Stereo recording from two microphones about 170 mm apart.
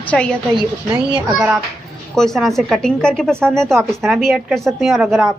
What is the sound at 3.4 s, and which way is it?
Speech, 15° right (ahead or behind).